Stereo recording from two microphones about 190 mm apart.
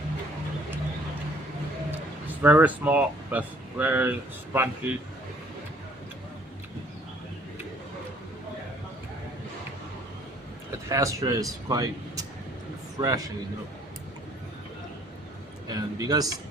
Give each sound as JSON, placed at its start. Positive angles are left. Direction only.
{"t": 2.2, "sound": "speech", "side_deg": -10}
{"t": 10.8, "sound": "speech", "side_deg": -15}
{"t": 15.7, "sound": "a man's voice", "side_deg": -20}